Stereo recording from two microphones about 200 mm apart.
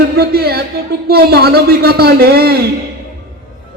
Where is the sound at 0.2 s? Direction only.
50° right (ahead or behind).